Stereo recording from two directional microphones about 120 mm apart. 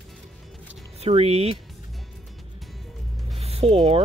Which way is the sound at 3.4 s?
60° right (ahead or behind).